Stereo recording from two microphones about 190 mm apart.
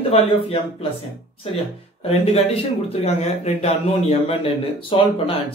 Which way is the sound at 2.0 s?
30° left (ahead or behind).